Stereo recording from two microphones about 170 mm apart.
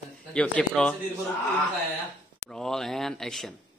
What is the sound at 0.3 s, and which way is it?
Speech, 5° left (ahead or behind).